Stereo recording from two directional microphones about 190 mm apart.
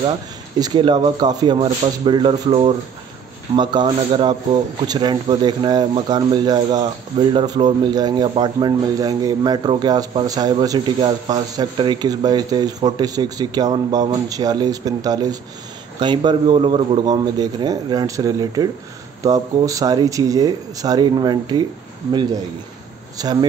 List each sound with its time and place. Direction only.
0.6 s speech: 20° right (ahead or behind)